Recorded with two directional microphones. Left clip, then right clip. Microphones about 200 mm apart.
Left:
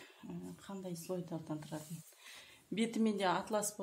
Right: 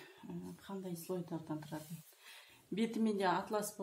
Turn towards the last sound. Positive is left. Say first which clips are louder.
# even
turn(degrees=35)  # may be behind; listen again after turning